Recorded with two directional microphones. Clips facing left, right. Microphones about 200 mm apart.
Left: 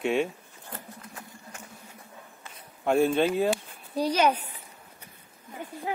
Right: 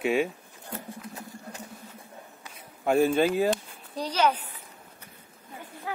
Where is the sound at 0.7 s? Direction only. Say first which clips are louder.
Right 5 dB; 25° right (ahead or behind).